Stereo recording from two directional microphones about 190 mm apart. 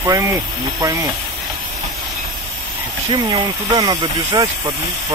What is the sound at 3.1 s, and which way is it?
Speech, 20° right (ahead or behind).